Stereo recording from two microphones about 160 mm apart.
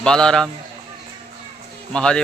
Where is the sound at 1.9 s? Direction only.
5° left (ahead or behind).